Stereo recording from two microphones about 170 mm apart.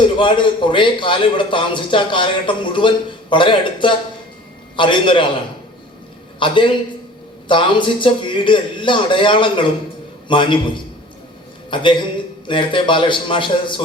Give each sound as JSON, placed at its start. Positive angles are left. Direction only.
{"t": 0.0, "sound": "a man's voice", "side_deg": 30}
{"t": 6.4, "sound": "a man's voice", "side_deg": 30}